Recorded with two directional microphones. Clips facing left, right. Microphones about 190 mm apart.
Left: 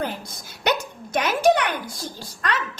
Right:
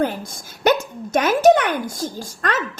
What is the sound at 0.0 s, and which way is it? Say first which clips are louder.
Speech: right 7 dB; 45° right (ahead or behind).